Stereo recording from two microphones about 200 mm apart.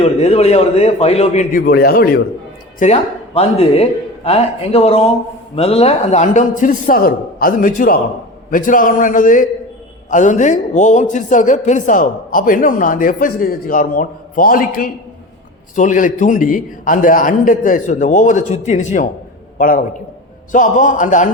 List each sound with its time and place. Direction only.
0.0 s a man's voice: 30° left (ahead or behind); by 2.2 s 50° left (ahead or behind)
2.7 s a man's voice: 35° left (ahead or behind)